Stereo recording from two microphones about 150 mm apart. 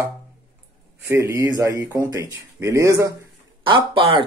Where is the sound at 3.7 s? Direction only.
35° right (ahead or behind).